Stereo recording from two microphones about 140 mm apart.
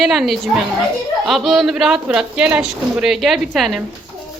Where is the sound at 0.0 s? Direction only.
Centre (ahead or behind).